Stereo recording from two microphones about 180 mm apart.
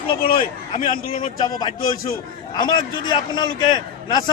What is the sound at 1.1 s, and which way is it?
A man's voice, 25° left (ahead or behind).